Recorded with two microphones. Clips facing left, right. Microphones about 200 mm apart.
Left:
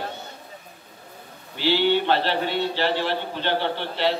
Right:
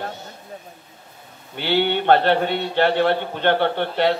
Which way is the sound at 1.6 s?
60° right (ahead or behind).